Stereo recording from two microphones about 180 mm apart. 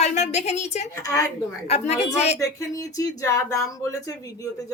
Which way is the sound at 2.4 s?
20° left (ahead or behind).